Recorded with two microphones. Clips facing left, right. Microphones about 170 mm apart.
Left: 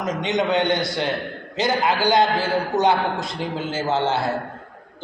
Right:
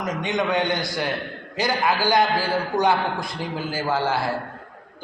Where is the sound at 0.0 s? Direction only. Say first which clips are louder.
Left 2 dB; 20° left (ahead or behind).